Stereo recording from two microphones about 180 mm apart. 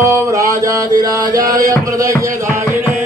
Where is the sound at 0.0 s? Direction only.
15° right (ahead or behind).